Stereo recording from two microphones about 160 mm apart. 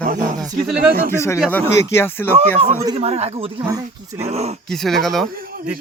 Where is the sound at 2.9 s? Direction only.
40° right (ahead or behind).